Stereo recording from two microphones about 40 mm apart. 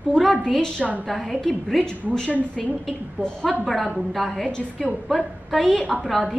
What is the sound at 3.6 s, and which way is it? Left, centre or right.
Speech, centre.